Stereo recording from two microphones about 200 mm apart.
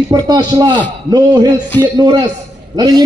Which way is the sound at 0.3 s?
20° right (ahead or behind).